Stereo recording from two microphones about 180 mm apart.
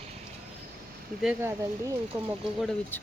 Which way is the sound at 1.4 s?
15° right (ahead or behind).